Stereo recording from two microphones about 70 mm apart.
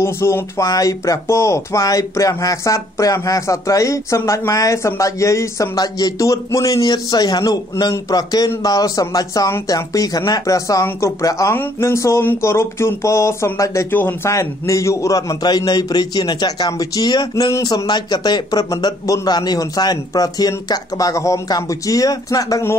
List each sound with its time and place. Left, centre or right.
0.0 s speech: left
0.7 s speech: left
5.8 s speech: left
13.9 s speech: left
14.3 s speech: left
15.4 s speech: left
17.6 s speech: left
19.2 s speech: left